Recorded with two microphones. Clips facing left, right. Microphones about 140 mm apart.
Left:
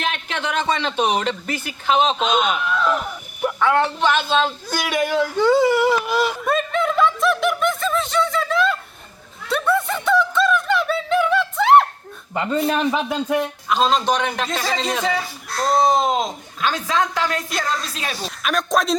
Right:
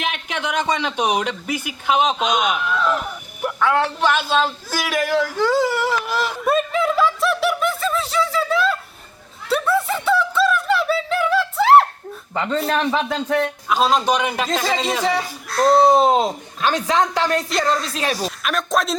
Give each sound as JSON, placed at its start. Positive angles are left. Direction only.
{"t": 0.0, "sound": "speech", "side_deg": -10}
{"t": 2.6, "sound": "a sound", "side_deg": 0}
{"t": 12.3, "sound": "speech", "side_deg": 10}
{"t": 13.7, "sound": "speech", "side_deg": -5}
{"t": 16.0, "sound": "speech", "side_deg": -35}
{"t": 18.3, "sound": "speech", "side_deg": 0}